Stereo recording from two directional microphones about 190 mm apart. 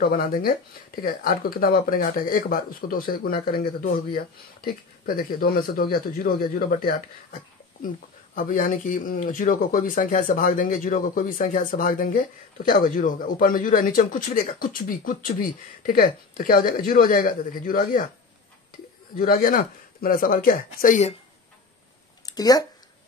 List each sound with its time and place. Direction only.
0.0 s speech: 50° left (ahead or behind)
8.4 s speech: 45° left (ahead or behind)
19.1 s speech: 45° left (ahead or behind)
22.2 s speech: 20° left (ahead or behind)